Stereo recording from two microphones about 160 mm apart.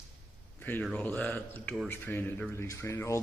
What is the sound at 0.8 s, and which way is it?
Speech, 10° left (ahead or behind).